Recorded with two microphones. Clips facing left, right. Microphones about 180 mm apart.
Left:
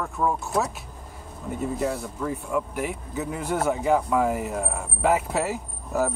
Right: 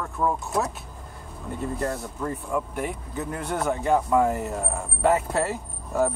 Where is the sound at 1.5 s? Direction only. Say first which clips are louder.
Left 2 dB; 5° left (ahead or behind).